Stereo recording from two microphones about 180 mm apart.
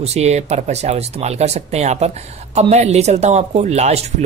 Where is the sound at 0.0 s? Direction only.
35° right (ahead or behind).